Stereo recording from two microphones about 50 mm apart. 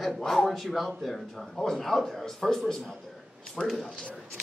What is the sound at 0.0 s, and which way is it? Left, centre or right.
Speech, centre.